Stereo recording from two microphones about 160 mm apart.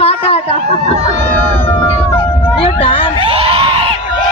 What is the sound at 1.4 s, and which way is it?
Cat, 15° left (ahead or behind).